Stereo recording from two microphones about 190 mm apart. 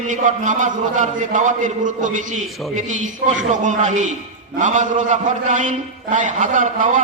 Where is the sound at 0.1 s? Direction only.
40° right (ahead or behind).